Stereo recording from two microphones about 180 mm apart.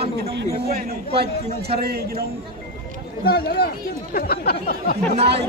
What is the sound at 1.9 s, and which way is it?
Speech, 60° right (ahead or behind).